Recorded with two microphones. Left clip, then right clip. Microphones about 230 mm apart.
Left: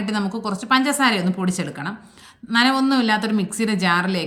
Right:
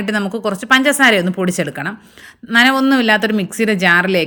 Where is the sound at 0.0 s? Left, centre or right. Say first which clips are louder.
Right 7 dB; centre.